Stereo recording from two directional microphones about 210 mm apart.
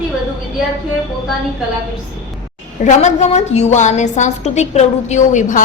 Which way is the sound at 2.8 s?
35° left (ahead or behind).